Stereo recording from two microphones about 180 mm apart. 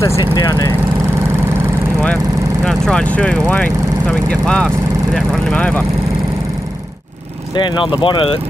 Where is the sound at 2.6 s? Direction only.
5° left (ahead or behind).